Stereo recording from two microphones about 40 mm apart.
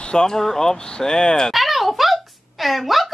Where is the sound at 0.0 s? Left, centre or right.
Centre.